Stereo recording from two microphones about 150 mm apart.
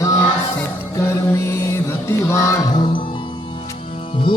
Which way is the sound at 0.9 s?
20° left (ahead or behind).